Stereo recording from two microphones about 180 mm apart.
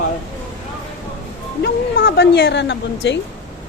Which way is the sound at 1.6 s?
60° left (ahead or behind).